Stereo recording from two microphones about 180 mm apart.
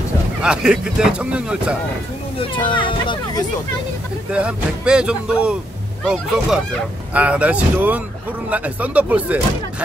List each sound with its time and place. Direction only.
0.4 s speech: 5° right (ahead or behind)
2.3 s speech: 25° left (ahead or behind)
4.3 s speech: 5° right (ahead or behind)